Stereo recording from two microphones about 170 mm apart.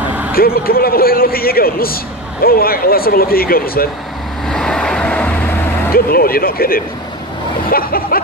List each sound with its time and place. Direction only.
0.3 s a man's voice: 60° left (ahead or behind)
4.5 s vehicle: 5° left (ahead or behind)
5.9 s a man's voice: 60° left (ahead or behind)